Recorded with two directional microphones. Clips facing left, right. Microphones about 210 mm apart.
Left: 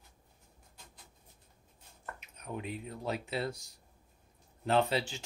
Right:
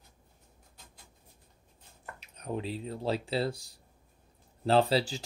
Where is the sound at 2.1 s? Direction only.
35° right (ahead or behind).